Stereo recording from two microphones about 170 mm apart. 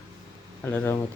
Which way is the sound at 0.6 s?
10° left (ahead or behind).